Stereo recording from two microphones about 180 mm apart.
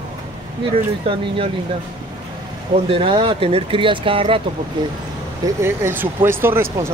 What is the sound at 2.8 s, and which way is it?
Speech, 30° right (ahead or behind).